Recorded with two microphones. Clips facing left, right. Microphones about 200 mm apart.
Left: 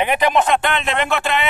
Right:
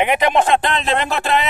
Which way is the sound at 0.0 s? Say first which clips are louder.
Right 1 dB; 20° right (ahead or behind).